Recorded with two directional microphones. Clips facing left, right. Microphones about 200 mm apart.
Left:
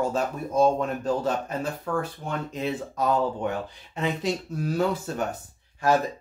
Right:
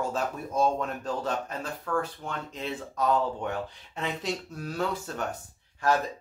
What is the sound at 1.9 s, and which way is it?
Speech, 20° left (ahead or behind).